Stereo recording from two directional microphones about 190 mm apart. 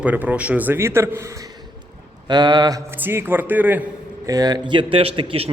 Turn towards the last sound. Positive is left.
turn(degrees=-30)  # may be behind; listen again after turning